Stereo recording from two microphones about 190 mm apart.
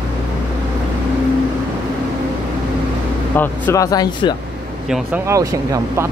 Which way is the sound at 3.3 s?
10° left (ahead or behind).